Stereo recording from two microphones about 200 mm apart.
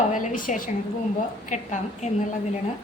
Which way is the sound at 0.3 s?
40° left (ahead or behind).